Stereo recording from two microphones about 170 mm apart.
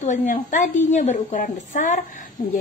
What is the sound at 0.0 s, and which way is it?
A woman's voice, 45° left (ahead or behind).